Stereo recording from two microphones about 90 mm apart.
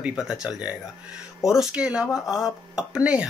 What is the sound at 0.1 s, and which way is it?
Speech, 5° right (ahead or behind).